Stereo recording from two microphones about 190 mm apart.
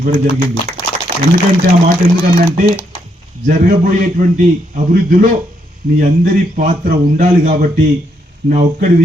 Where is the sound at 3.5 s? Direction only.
45° right (ahead or behind).